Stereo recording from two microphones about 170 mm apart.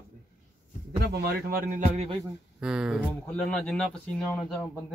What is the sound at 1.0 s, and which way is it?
Speech, 70° right (ahead or behind).